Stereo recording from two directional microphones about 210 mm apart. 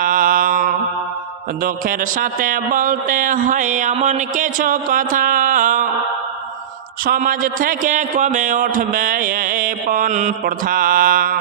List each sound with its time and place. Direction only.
0.0 s mantra: 40° right (ahead or behind)
1.6 s a man's voice: 40° right (ahead or behind)
7.0 s a man's voice: 40° right (ahead or behind)